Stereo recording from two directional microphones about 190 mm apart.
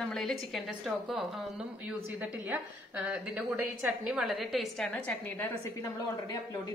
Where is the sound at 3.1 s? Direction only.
10° right (ahead or behind).